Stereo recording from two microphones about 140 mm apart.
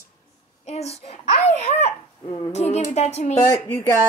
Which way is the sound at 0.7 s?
50° left (ahead or behind).